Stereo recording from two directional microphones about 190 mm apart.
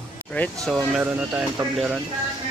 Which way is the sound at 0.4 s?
Centre (ahead or behind).